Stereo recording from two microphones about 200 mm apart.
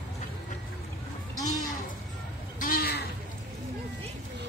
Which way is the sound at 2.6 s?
50° left (ahead or behind).